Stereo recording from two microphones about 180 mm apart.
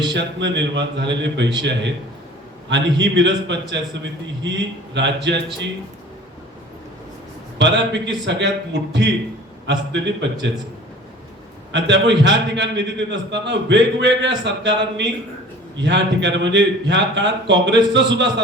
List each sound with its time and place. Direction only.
0.1 s a man's voice: 75° right (ahead or behind)
7.6 s a man's voice: 75° right (ahead or behind)
11.7 s a man's voice: 75° right (ahead or behind)